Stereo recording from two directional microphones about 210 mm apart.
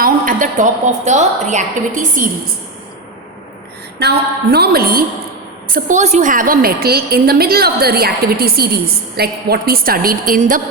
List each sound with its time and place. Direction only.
0.0 s a woman's voice: 40° right (ahead or behind)
4.0 s a woman's voice: 50° right (ahead or behind)